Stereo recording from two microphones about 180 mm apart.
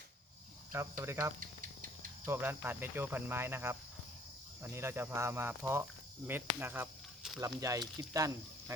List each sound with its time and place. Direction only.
0.7 s speech: 15° right (ahead or behind)
1.4 s a sound: 50° right (ahead or behind)
2.2 s speech: 10° right (ahead or behind)